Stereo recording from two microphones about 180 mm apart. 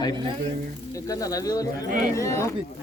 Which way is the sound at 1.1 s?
20° left (ahead or behind).